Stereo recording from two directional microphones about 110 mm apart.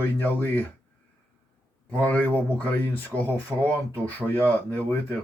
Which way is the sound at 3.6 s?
15° left (ahead or behind).